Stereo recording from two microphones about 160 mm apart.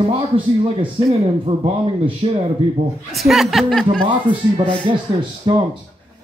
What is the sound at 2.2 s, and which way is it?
Speech, 40° right (ahead or behind).